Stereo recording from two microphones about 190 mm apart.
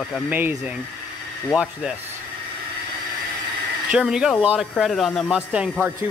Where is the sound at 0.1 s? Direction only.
10° right (ahead or behind).